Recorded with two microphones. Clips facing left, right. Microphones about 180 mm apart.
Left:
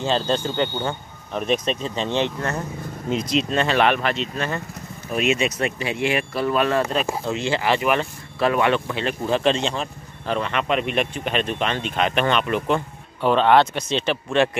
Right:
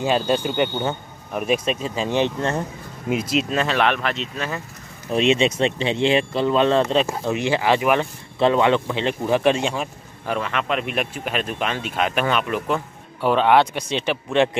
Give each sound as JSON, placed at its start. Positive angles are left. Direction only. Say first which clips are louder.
{"t": 0.0, "sound": "speech", "louder": "right 2 dB", "side_deg": -10}
{"t": 3.1, "sound": "speech", "louder": "right 1 dB", "side_deg": -5}
{"t": 5.1, "sound": "speech", "louder": "right 3 dB", "side_deg": -30}